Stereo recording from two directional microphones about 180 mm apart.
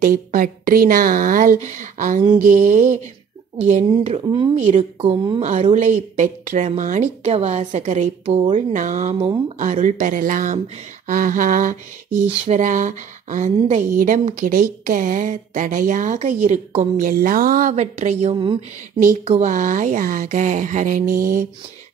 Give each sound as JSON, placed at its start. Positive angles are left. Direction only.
{"t": 0.0, "sound": "a woman's voice", "side_deg": -50}
{"t": 4.6, "sound": "a woman's voice", "side_deg": -35}
{"t": 9.1, "sound": "speech", "side_deg": -30}
{"t": 9.6, "sound": "speech", "side_deg": -45}
{"t": 18.9, "sound": "speech", "side_deg": -40}